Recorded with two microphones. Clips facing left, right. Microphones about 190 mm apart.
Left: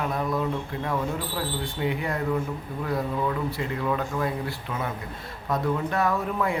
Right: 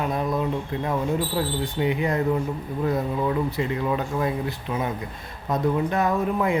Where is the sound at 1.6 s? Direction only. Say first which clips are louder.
Right 3 dB; 20° right (ahead or behind).